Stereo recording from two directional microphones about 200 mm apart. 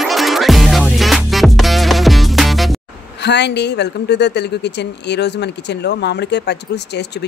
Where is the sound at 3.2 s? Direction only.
60° left (ahead or behind).